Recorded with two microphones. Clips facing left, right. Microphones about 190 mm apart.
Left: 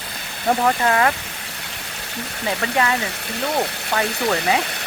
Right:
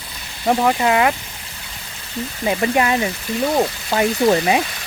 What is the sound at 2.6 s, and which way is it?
Frying, 20° right (ahead or behind).